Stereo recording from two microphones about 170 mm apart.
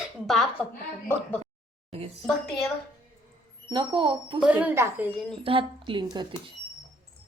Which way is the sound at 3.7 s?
30° right (ahead or behind).